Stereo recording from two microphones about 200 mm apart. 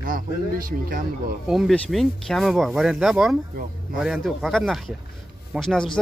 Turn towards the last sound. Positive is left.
turn(degrees=5)  # may be behind; listen again after turning